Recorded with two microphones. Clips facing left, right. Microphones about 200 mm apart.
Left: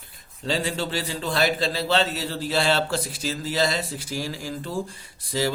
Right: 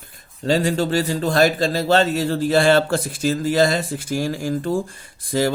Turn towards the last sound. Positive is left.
turn(degrees=-50)  # may be behind; listen again after turning